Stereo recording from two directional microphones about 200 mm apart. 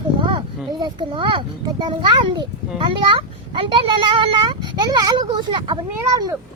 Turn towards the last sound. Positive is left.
turn(degrees=-20)  # may be behind; listen again after turning